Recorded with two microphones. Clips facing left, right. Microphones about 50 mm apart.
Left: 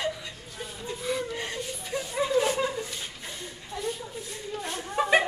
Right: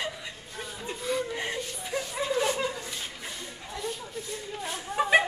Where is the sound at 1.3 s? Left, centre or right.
Right.